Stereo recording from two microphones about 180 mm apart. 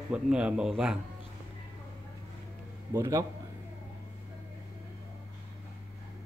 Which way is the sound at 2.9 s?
15° right (ahead or behind).